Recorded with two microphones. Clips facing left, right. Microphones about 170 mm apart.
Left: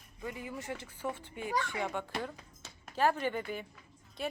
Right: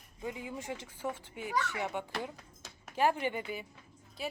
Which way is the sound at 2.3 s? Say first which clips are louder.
Even; centre (ahead or behind).